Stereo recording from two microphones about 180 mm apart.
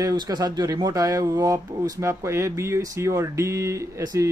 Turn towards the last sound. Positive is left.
turn(degrees=-20)  # may be behind; listen again after turning